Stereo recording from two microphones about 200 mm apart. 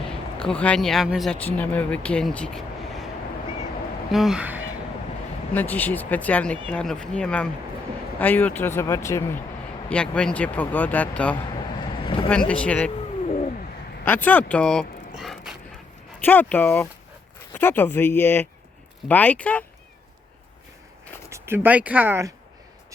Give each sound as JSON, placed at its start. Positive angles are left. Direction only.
{"t": 0.4, "sound": "speech", "side_deg": 5}
{"t": 4.1, "sound": "speech", "side_deg": 0}
{"t": 5.5, "sound": "speech", "side_deg": 10}
{"t": 11.8, "sound": "vehicle", "side_deg": 25}
{"t": 12.5, "sound": "speech", "side_deg": 5}
{"t": 13.2, "sound": "a sound", "side_deg": 35}
{"t": 14.0, "sound": "speech", "side_deg": 10}
{"t": 16.2, "sound": "speech", "side_deg": 10}
{"t": 21.2, "sound": "speech", "side_deg": -15}